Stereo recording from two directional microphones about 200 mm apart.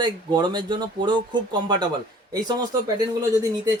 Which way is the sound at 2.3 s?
20° right (ahead or behind).